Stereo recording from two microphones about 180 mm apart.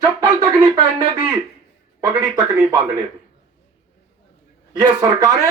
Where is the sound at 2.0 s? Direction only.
15° right (ahead or behind).